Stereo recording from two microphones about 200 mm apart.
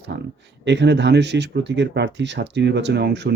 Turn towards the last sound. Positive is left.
turn(degrees=-60)  # may be behind; listen again after turning